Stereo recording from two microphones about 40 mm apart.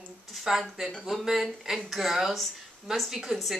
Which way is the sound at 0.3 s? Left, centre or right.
Centre.